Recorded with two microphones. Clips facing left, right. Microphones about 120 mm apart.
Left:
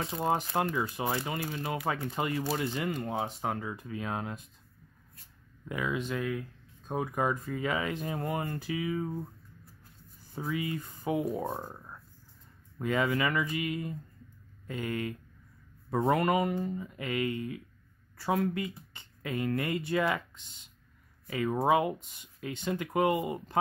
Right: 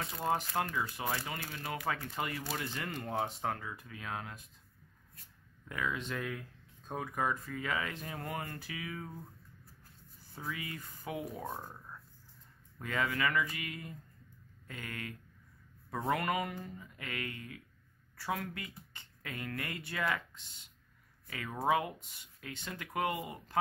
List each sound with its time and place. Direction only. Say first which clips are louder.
0.0 s speech: left 4 dB; 25° left (ahead or behind)
3.0 s speech: left 3 dB; 5° left (ahead or behind)
3.4 s speech: left 4 dB; 20° left (ahead or behind)
5.7 s speech: left 5 dB; 15° left (ahead or behind)
6.9 s speech: left 5 dB; 15° left (ahead or behind)
10.3 s speech: left 9 dB; 20° left (ahead or behind)
12.7 s speech: left 6 dB; 20° left (ahead or behind)